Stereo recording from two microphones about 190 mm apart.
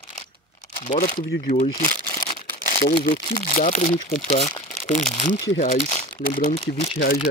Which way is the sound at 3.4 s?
35° left (ahead or behind).